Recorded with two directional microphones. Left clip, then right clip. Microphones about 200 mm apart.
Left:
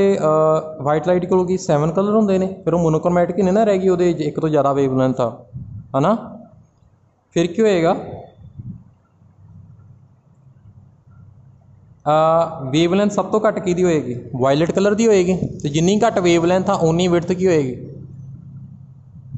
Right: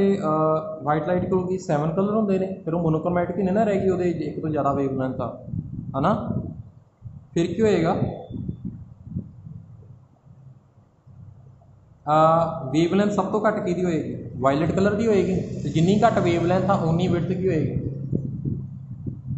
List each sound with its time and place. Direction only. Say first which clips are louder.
0.0 s a man's voice: left 7 dB; 50° left (ahead or behind)
7.3 s a man's voice: left 5 dB; 45° left (ahead or behind)
12.0 s a man's voice: left 3 dB; 45° left (ahead or behind)